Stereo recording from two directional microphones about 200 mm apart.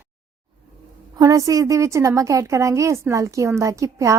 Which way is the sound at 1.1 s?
15° right (ahead or behind).